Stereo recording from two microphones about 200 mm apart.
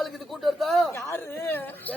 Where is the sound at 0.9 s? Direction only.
15° left (ahead or behind).